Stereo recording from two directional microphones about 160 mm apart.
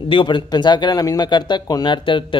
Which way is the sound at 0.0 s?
30° left (ahead or behind).